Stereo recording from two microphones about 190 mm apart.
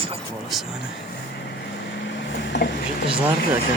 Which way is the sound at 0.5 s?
Centre (ahead or behind).